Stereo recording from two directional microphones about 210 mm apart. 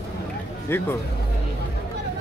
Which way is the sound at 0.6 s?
10° left (ahead or behind).